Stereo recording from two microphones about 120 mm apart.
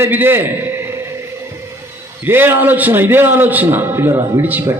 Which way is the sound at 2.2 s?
20° right (ahead or behind).